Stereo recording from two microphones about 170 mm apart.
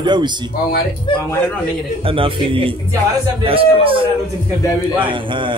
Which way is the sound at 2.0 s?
30° right (ahead or behind).